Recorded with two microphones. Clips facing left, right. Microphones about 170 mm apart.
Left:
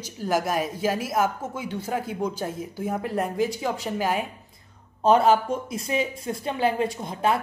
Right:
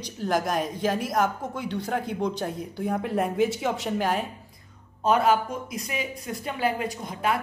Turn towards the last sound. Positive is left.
turn(degrees=25)  # may be behind; listen again after turning